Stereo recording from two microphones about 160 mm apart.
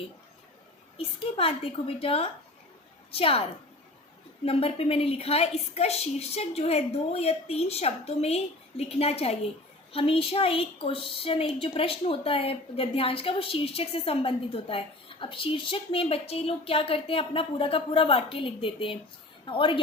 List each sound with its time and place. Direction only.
0.9 s a woman's voice: 35° left (ahead or behind)
4.4 s a woman's voice: 40° left (ahead or behind)